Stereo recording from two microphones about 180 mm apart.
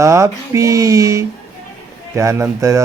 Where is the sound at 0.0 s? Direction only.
15° right (ahead or behind).